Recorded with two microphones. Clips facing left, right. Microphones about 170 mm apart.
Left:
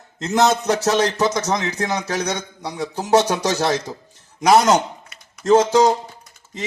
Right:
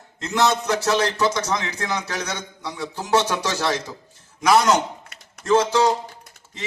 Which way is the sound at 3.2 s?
40° left (ahead or behind).